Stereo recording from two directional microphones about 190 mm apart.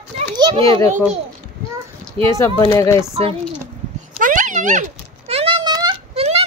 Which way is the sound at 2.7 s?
15° left (ahead or behind).